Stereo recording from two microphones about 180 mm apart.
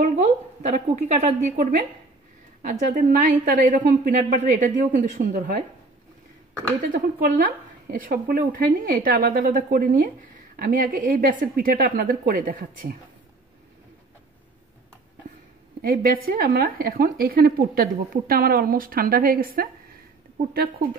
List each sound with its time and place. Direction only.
0.0 s a woman's voice: 40° right (ahead or behind)
6.8 s a woman's voice: 50° right (ahead or behind)
15.8 s a woman's voice: 55° right (ahead or behind)